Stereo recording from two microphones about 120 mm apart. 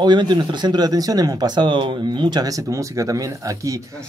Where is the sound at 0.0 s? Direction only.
40° right (ahead or behind).